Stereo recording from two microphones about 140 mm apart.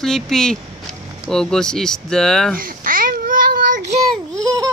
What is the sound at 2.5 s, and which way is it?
Babbling, 85° right.